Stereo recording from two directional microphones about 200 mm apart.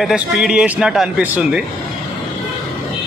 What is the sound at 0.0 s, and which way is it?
A man's voice, 5° right (ahead or behind).